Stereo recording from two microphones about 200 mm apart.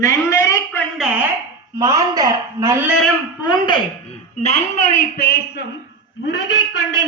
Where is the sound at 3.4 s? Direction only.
20° left (ahead or behind).